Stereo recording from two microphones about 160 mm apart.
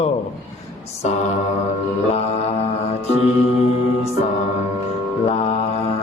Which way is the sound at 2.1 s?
40° left (ahead or behind).